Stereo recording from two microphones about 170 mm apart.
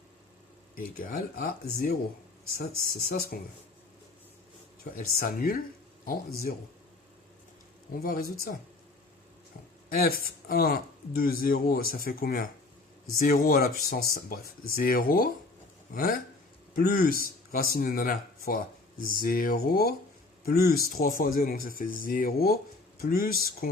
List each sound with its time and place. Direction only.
0.8 s speech: 55° left (ahead or behind)
4.9 s speech: 55° left (ahead or behind)
8.0 s speech: 60° left (ahead or behind)
10.0 s speech: 60° left (ahead or behind)